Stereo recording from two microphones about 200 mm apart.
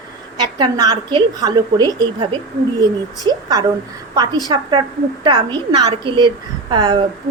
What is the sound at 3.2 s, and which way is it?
A woman's voice, 20° right (ahead or behind).